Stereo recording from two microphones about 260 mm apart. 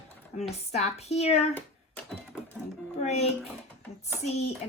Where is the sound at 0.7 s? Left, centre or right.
Left.